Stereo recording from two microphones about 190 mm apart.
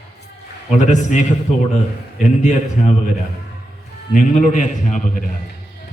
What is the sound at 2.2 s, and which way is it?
Speech, 40° left (ahead or behind).